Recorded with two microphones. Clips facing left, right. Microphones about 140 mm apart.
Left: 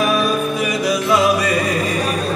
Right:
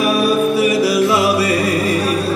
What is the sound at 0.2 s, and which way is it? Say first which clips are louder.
Music: right 5 dB; 35° right (ahead or behind).